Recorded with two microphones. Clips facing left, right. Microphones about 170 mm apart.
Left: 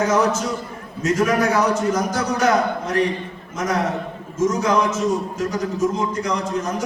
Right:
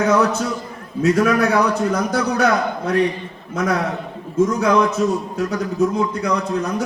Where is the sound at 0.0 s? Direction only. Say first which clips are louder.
Right 2 dB; 65° right (ahead or behind).